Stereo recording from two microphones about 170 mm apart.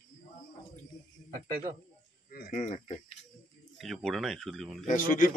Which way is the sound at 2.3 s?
55° left (ahead or behind).